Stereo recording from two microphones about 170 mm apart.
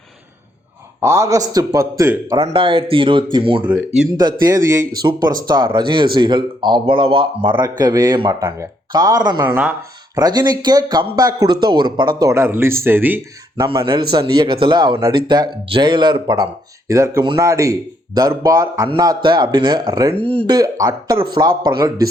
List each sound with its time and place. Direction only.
1.0 s a man's voice: 15° right (ahead or behind)
2.3 s a man's voice: 30° right (ahead or behind)
3.7 s speech: 10° right (ahead or behind)
4.2 s a man's voice: 25° right (ahead or behind)
9.5 s speech: 10° right (ahead or behind)
10.2 s a man's voice: 20° right (ahead or behind)
13.7 s a man's voice: 30° right (ahead or behind)
16.9 s a man's voice: 15° right (ahead or behind)